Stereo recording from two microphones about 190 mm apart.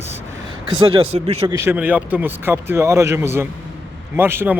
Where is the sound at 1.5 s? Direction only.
15° right (ahead or behind).